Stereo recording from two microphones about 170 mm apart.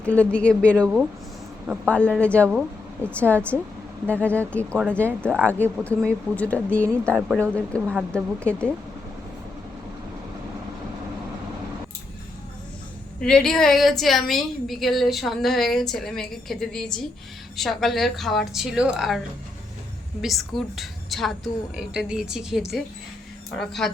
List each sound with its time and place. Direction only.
0.0 s speech: 5° left (ahead or behind)
1.6 s a woman's voice: 5° right (ahead or behind)
1.9 s speech: 5° left (ahead or behind)
13.2 s a woman's voice: 5° left (ahead or behind)
20.2 s a woman's voice: centre (ahead or behind)